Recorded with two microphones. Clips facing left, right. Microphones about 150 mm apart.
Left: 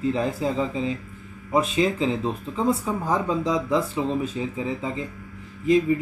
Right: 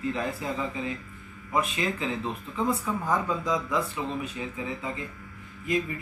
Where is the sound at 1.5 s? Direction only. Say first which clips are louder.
Left 7 dB; 30° left (ahead or behind).